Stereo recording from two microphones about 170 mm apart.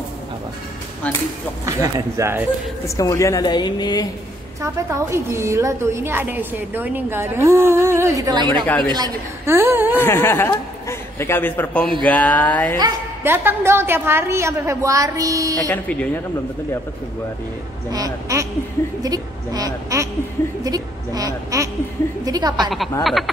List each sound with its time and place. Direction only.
1.7 s a woman's voice: 20° right (ahead or behind)
3.0 s a woman's voice: 20° left (ahead or behind)
5.1 s a woman's voice: 15° right (ahead or behind)
9.9 s speech: 15° left (ahead or behind)
13.2 s a woman's voice: 15° right (ahead or behind)
15.7 s speech: 10° left (ahead or behind)
17.9 s a woman's voice: 20° right (ahead or behind)
23.0 s speech: centre (ahead or behind)